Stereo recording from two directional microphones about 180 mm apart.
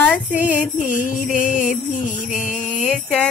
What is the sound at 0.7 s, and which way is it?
Music, 45° left (ahead or behind).